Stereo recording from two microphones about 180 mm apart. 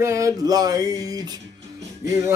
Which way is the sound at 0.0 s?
15° right (ahead or behind).